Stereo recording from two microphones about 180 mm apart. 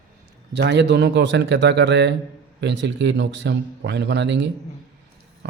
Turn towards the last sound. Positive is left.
turn(degrees=-75)  # may be behind; listen again after turning